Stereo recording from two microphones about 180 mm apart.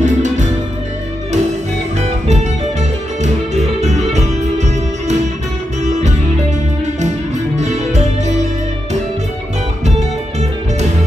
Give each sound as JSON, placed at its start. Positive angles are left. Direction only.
{"t": 0.0, "sound": "music", "side_deg": -40}
{"t": 2.0, "sound": "music", "side_deg": -40}
{"t": 7.5, "sound": "music", "side_deg": -40}